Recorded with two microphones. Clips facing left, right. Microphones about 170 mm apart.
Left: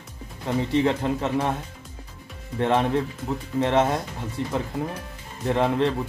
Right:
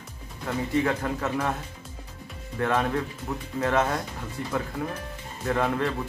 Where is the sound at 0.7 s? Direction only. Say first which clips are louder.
Left 3 dB; 25° left (ahead or behind).